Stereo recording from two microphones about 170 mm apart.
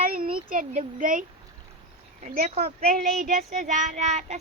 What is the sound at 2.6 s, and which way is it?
A child's voice, 55° right (ahead or behind).